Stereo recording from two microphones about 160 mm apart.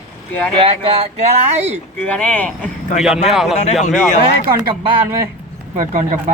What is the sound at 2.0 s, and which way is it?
Speech, 10° left (ahead or behind).